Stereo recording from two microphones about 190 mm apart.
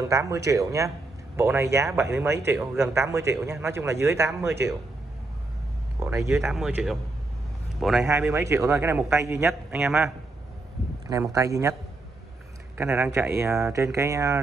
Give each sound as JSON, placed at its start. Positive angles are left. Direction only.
{"t": 0.1, "sound": "a man's voice", "side_deg": -15}
{"t": 5.9, "sound": "a man's voice", "side_deg": -15}
{"t": 6.5, "sound": "a man's voice", "side_deg": 0}
{"t": 8.1, "sound": "a man's voice", "side_deg": -15}
{"t": 11.1, "sound": "a man's voice", "side_deg": -15}
{"t": 12.7, "sound": "a man's voice", "side_deg": -10}